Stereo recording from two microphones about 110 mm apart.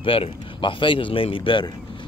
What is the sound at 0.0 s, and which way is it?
Speech, 55° left (ahead or behind).